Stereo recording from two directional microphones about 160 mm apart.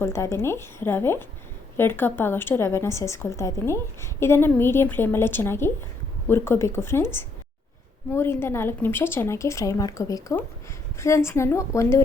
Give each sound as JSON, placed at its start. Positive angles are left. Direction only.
{"t": 0.0, "sound": "a woman's voice", "side_deg": 15}